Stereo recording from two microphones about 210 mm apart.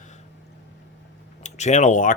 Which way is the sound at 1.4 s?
35° left (ahead or behind).